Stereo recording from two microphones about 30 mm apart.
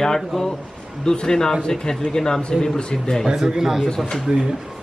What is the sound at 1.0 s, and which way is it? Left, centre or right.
Speech, left.